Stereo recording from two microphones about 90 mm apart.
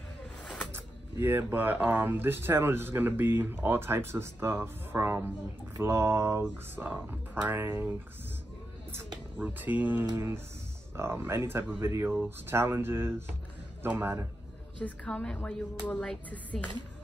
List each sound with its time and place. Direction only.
0.4 s bird: 10° left (ahead or behind)
0.7 s speech: 25° right (ahead or behind)
9.4 s speech: 20° right (ahead or behind)
14.8 s speech: 15° left (ahead or behind)